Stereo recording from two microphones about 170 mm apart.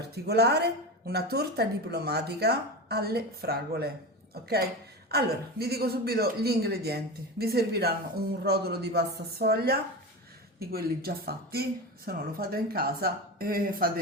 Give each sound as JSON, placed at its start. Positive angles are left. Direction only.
{"t": 0.3, "sound": "speech", "side_deg": -75}